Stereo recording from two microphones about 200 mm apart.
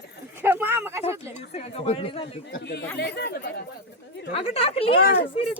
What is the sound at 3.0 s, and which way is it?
Speech, 55° left (ahead or behind).